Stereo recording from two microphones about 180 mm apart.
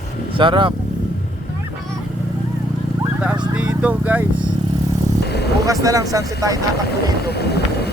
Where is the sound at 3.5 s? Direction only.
5° right (ahead or behind).